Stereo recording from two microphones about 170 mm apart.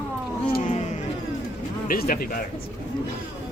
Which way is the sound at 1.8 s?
55° left (ahead or behind).